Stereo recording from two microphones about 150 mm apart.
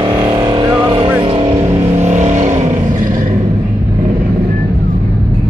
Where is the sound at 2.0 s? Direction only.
50° right (ahead or behind).